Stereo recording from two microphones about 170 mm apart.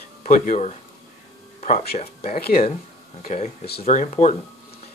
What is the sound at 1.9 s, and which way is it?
Speech, 40° left (ahead or behind).